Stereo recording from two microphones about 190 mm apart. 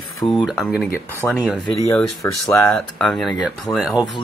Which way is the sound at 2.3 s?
Centre (ahead or behind).